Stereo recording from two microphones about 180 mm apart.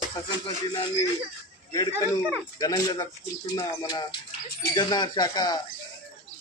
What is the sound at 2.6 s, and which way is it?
Speech, 20° left (ahead or behind).